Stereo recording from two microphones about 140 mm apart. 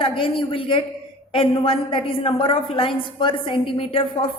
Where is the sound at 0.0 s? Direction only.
40° left (ahead or behind).